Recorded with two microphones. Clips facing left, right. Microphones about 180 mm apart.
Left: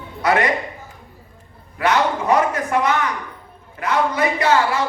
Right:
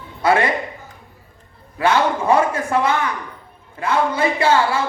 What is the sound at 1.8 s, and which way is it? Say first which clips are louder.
A man's voice: right 1 dB; 30° right (ahead or behind).